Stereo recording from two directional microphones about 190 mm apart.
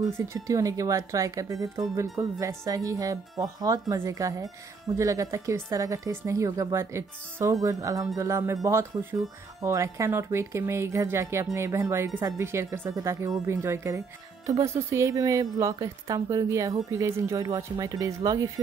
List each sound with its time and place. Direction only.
0.2 s speech: 15° right (ahead or behind)
9.6 s speech: 15° right (ahead or behind)